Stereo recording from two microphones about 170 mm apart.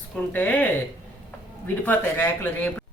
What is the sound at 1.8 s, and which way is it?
Speech, 10° left (ahead or behind).